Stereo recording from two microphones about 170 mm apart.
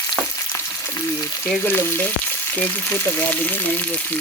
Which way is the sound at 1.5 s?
15° left (ahead or behind).